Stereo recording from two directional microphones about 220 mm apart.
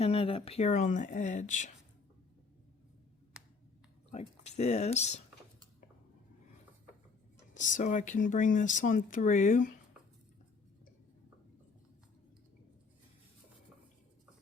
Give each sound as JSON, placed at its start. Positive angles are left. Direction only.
{"t": 0.0, "sound": "speech", "side_deg": 25}
{"t": 4.1, "sound": "speech", "side_deg": 30}
{"t": 7.5, "sound": "speech", "side_deg": 35}